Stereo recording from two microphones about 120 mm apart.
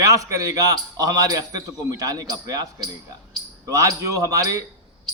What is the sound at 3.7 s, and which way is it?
Speech, 30° right (ahead or behind).